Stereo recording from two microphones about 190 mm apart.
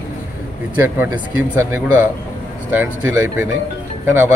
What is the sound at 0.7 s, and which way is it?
Speech, 10° right (ahead or behind).